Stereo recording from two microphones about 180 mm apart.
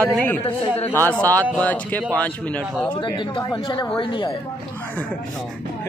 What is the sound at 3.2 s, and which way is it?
Speech, 25° left (ahead or behind).